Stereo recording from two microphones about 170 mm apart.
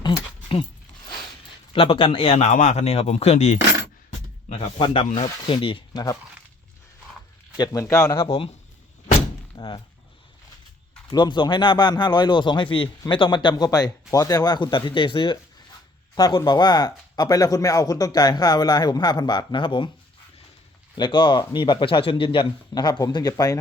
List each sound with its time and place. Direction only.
0.0 s dog: 30° left (ahead or behind)
1.7 s a man's voice: 30° left (ahead or behind)
7.5 s speech: 25° left (ahead or behind)
8.1 s a man's voice: 30° left (ahead or behind)
9.6 s speech: 25° left (ahead or behind)
11.1 s speech: 25° left (ahead or behind)
20.9 s speech: 25° left (ahead or behind)